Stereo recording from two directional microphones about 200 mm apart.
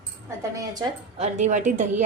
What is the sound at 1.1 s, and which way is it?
Speech, 35° right (ahead or behind).